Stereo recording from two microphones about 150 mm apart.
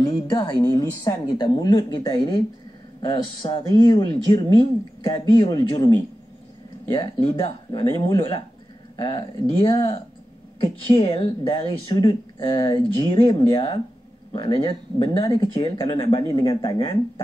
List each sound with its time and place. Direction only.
0.0 s a woman's voice: 30° left (ahead or behind)
6.9 s a woman's voice: 35° left (ahead or behind)